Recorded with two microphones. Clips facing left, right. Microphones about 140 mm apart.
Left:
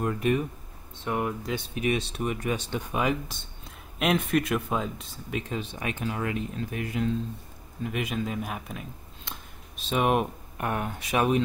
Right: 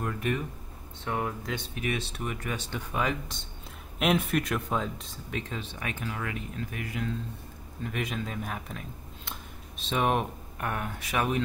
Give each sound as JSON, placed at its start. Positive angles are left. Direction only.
{"t": 0.0, "sound": "speech", "side_deg": 20}
{"t": 1.0, "sound": "speech", "side_deg": 10}
{"t": 1.8, "sound": "speech", "side_deg": 20}
{"t": 4.0, "sound": "speech", "side_deg": 0}
{"t": 5.5, "sound": "speech", "side_deg": 20}
{"t": 7.8, "sound": "speech", "side_deg": 5}
{"t": 10.6, "sound": "speech", "side_deg": 20}